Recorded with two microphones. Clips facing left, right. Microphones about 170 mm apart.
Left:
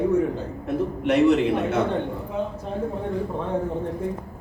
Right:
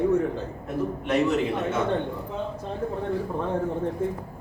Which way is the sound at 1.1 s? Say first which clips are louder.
Left 6 dB; 70° left (ahead or behind).